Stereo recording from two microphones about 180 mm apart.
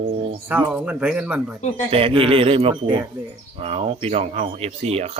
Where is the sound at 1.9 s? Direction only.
30° right (ahead or behind).